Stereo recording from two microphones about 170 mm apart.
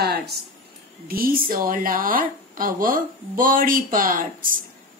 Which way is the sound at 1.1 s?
60° right (ahead or behind).